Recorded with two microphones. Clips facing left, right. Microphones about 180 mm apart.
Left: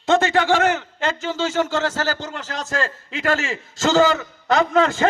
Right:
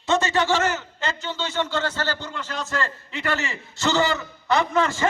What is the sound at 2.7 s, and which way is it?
Speech, 90° left.